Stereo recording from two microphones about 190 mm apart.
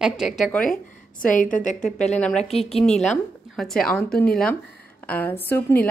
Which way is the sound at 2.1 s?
5° left (ahead or behind).